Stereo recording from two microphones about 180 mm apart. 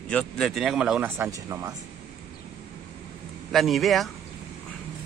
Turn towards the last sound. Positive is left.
turn(degrees=0)  # may be behind; listen again after turning